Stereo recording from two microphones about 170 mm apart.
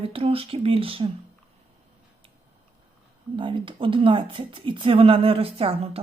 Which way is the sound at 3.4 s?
30° right (ahead or behind).